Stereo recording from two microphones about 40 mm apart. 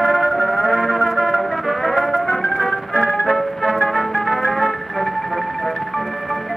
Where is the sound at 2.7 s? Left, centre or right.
Left.